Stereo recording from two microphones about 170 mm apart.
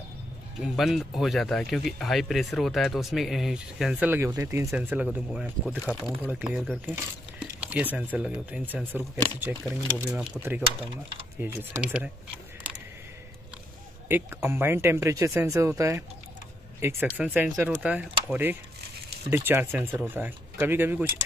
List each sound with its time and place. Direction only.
0.6 s speech: centre (ahead or behind)
14.0 s speech: 10° right (ahead or behind)
18.8 s a sound: 70° right (ahead or behind)
19.3 s speech: 15° right (ahead or behind)